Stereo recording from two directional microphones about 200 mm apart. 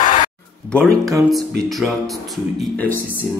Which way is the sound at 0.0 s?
40° left (ahead or behind).